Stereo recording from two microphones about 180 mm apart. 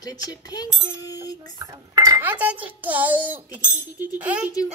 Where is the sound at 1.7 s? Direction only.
20° right (ahead or behind).